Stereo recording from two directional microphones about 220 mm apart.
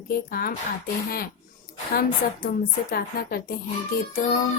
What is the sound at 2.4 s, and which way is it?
A woman's voice, 45° left (ahead or behind).